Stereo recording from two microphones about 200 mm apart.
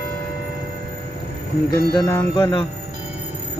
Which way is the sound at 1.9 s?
15° left (ahead or behind).